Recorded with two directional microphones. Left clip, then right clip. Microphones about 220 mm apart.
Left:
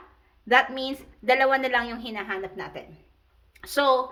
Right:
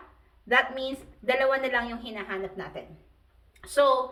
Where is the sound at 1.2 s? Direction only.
50° left (ahead or behind).